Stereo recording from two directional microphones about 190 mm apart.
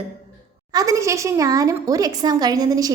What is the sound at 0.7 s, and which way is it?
Speech, 20° right (ahead or behind).